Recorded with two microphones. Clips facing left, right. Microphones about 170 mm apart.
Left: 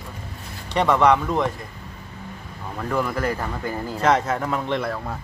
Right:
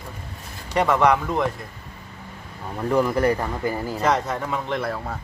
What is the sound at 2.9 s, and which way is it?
Speech, 15° right (ahead or behind).